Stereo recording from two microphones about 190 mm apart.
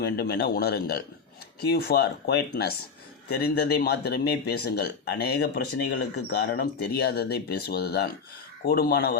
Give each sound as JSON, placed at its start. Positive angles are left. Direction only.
{"t": 0.0, "sound": "speech", "side_deg": 55}